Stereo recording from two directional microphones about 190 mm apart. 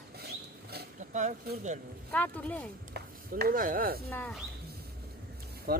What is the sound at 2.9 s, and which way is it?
Speech, 50° right (ahead or behind).